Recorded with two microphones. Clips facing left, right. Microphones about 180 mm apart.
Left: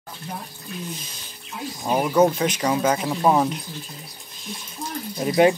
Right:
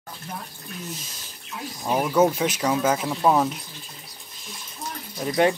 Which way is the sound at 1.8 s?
5° left (ahead or behind).